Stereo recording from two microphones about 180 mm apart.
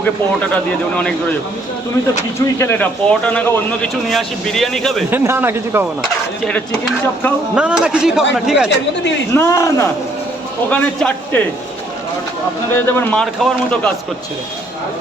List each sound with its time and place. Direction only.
0.5 s a man's voice: 5° left (ahead or behind)
2.6 s a man's voice: 10° left (ahead or behind)
5.1 s a man's voice: 10° right (ahead or behind)
6.4 s a man's voice: 5° left (ahead or behind)
7.5 s speech: 5° right (ahead or behind)
9.3 s a man's voice: 15° left (ahead or behind)
12.7 s a man's voice: 10° left (ahead or behind)